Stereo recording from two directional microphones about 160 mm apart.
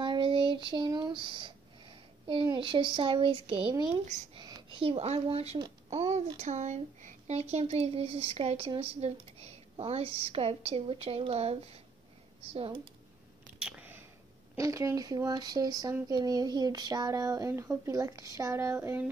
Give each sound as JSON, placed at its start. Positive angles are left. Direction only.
{"t": 0.0, "sound": "child singing", "side_deg": -30}
{"t": 2.4, "sound": "speech", "side_deg": -30}
{"t": 13.6, "sound": "a sound", "side_deg": -5}
{"t": 14.6, "sound": "speech", "side_deg": -20}